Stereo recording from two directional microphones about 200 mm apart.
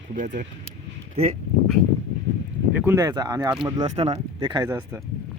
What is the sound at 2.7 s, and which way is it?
Speech, 10° right (ahead or behind).